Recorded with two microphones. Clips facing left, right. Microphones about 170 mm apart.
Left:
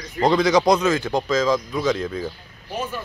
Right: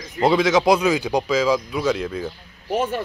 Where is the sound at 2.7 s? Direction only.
90° right.